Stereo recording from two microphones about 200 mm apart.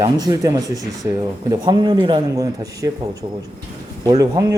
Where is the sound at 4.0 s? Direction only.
20° right (ahead or behind).